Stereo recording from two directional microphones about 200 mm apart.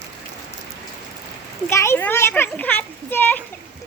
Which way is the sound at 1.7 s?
15° left (ahead or behind).